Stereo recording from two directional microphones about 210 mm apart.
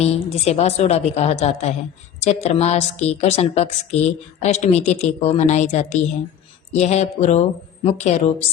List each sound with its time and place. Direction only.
0.0 s a woman's voice: 30° left (ahead or behind)